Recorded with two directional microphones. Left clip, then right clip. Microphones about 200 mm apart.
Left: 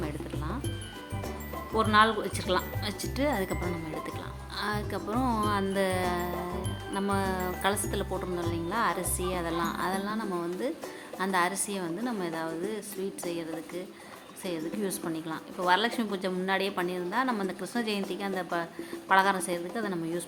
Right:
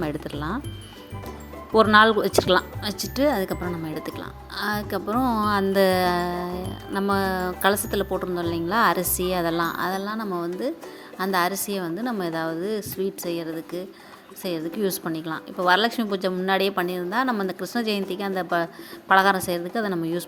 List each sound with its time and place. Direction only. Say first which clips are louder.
0.0 s music: right 7 dB; 35° right (ahead or behind)
1.7 s a woman's voice: right 8 dB; 30° right (ahead or behind)